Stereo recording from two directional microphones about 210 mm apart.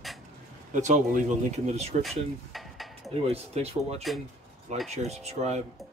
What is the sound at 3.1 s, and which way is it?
Speech, 30° right (ahead or behind).